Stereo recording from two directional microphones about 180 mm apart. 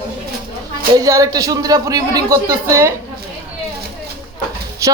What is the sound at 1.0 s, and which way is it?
A man's voice, 20° right (ahead or behind).